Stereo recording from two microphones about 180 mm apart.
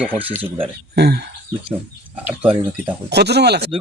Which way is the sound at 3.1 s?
65° right (ahead or behind).